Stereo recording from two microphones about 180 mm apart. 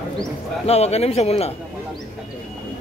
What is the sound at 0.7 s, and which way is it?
Speech, 35° left (ahead or behind).